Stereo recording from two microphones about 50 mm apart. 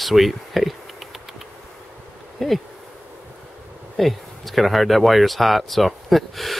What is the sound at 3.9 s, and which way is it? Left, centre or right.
Speech, centre.